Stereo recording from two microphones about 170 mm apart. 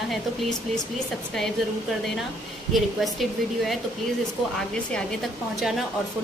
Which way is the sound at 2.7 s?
Centre (ahead or behind).